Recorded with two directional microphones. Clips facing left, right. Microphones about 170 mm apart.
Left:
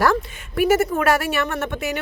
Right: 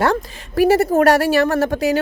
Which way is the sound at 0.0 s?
30° right (ahead or behind).